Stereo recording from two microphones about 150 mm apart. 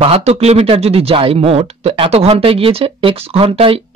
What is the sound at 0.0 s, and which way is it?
Speech, 40° right (ahead or behind).